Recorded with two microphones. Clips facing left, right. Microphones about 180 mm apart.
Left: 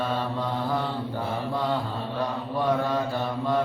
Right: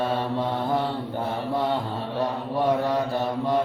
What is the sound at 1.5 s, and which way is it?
Mantra, 20° right (ahead or behind).